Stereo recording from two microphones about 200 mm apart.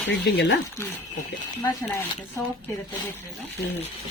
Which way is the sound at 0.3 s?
55° left (ahead or behind).